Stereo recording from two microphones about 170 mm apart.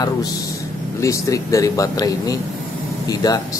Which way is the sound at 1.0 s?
20° left (ahead or behind).